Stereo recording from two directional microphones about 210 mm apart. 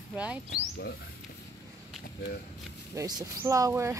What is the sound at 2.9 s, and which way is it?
Speech, 15° right (ahead or behind).